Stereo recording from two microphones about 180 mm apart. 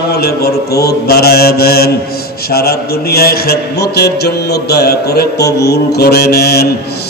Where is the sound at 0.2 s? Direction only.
60° left (ahead or behind).